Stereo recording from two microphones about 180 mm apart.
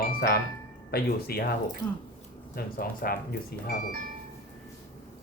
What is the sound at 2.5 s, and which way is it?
Speech, 55° left (ahead or behind).